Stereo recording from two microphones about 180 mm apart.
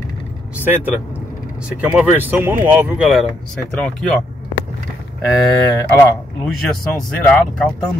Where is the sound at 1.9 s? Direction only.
10° right (ahead or behind).